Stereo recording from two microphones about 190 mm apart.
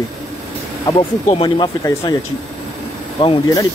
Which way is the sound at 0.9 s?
20° left (ahead or behind).